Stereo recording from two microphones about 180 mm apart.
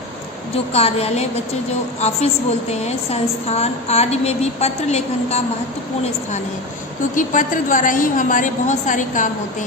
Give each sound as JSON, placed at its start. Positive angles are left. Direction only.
{"t": 0.5, "sound": "a woman's voice", "side_deg": 35}
{"t": 7.2, "sound": "a woman's voice", "side_deg": 45}